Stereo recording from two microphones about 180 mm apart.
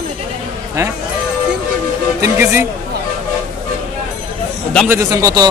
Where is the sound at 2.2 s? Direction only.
10° right (ahead or behind).